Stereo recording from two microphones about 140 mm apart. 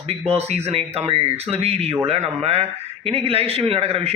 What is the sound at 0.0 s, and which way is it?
A man's voice, 45° right (ahead or behind).